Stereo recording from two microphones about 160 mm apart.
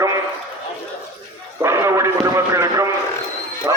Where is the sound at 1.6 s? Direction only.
15° right (ahead or behind).